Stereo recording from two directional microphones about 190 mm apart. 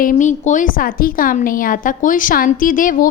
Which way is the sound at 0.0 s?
40° left (ahead or behind).